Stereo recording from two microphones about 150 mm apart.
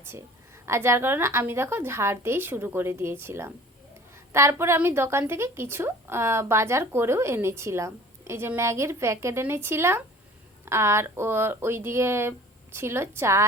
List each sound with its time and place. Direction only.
0.0 s a woman's voice: 15° right (ahead or behind)